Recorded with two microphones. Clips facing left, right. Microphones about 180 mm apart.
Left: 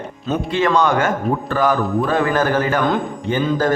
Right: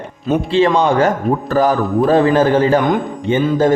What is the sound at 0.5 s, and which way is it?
A man's voice, 30° right (ahead or behind).